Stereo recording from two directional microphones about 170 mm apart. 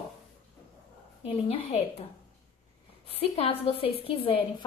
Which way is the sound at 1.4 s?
35° left (ahead or behind).